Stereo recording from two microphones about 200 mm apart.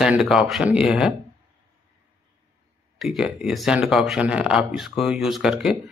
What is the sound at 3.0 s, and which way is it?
Speech, centre (ahead or behind).